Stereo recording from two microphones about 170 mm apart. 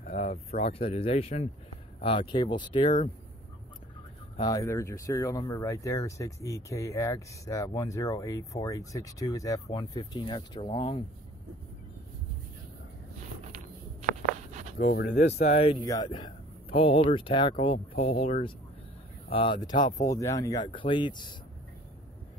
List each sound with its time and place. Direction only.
0.0 s a sound: 45° left (ahead or behind)
0.5 s speech: 35° left (ahead or behind)
4.4 s speech: 20° left (ahead or behind)
14.8 s speech: 65° left (ahead or behind)
15.3 s speech: 40° left (ahead or behind)
15.8 s speech: 25° left (ahead or behind)